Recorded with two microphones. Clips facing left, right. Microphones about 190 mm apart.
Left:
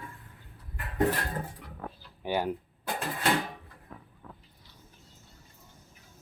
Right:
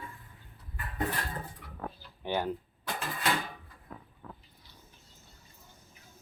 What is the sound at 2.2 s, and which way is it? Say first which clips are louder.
Speech: left 2 dB; 10° left (ahead or behind).